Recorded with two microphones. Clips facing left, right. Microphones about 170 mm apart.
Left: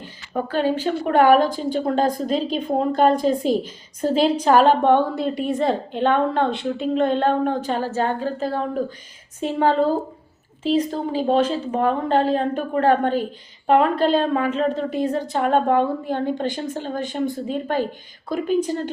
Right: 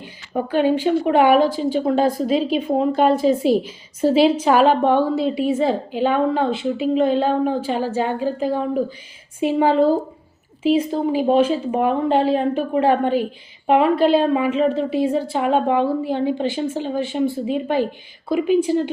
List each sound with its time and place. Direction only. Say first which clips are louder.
0.0 s a woman's voice: right 2 dB; 15° right (ahead or behind)
1.1 s a woman's voice: left 1 dB; 45° left (ahead or behind)
1.5 s a woman's voice: right 3 dB; 5° right (ahead or behind)